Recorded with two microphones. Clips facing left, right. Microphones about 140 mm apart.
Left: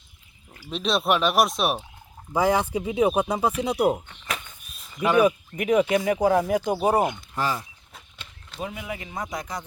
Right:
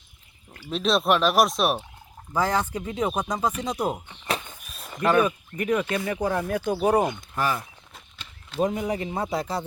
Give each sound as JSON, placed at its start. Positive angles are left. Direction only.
{"t": 0.5, "sound": "speech", "side_deg": 0}
{"t": 2.3, "sound": "speech", "side_deg": 10}
{"t": 4.3, "sound": "walk", "side_deg": -30}
{"t": 4.6, "sound": "a sound", "side_deg": -75}
{"t": 4.9, "sound": "speech", "side_deg": 10}
{"t": 7.3, "sound": "speech", "side_deg": 20}
{"t": 8.6, "sound": "speech", "side_deg": -40}